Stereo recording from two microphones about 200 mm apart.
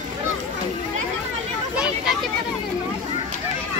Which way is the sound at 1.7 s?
5° right (ahead or behind).